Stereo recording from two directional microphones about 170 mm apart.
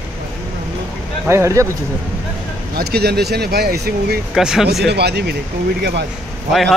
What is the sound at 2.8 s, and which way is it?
Speech, 70° right (ahead or behind).